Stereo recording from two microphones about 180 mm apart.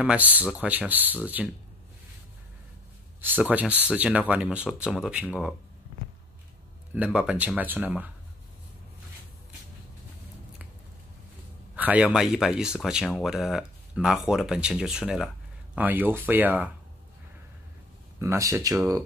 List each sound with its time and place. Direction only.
0.0 s speech: 10° right (ahead or behind)
3.2 s speech: 10° right (ahead or behind)
6.9 s speech: 5° right (ahead or behind)
11.7 s speech: 10° right (ahead or behind)
18.2 s speech: 15° right (ahead or behind)